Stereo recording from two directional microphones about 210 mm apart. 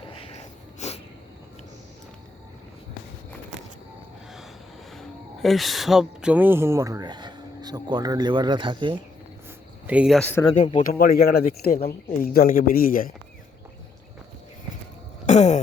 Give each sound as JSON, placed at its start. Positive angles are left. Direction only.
{"t": 0.1, "sound": "snort", "side_deg": 30}
{"t": 4.9, "sound": "speech", "side_deg": 0}
{"t": 9.8, "sound": "speech", "side_deg": -5}
{"t": 10.8, "sound": "speech", "side_deg": 40}
{"t": 15.3, "sound": "a sound", "side_deg": 35}